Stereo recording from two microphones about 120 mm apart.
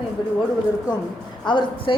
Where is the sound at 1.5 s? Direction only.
40° left (ahead or behind).